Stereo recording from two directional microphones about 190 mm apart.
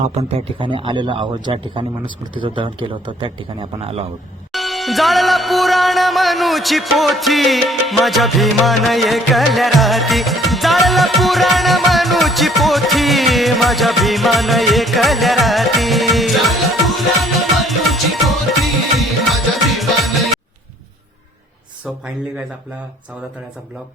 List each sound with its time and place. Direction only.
0.1 s a man's voice: 35° right (ahead or behind)
4.5 s music: centre (ahead or behind)